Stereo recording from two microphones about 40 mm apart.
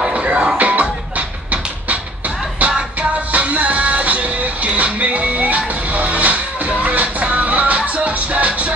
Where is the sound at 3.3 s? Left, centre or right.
Right.